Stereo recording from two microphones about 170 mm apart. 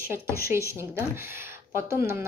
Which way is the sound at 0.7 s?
15° right (ahead or behind).